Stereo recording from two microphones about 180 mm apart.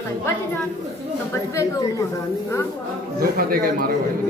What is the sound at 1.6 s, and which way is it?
Speech, 20° left (ahead or behind).